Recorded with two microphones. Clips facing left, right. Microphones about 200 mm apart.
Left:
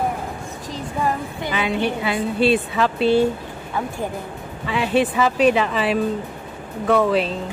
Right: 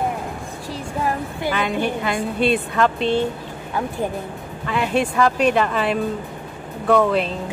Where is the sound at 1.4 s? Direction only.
Centre (ahead or behind).